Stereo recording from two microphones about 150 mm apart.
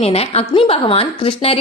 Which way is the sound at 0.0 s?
45° left (ahead or behind).